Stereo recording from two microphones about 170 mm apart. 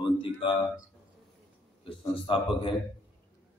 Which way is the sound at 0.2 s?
30° left (ahead or behind).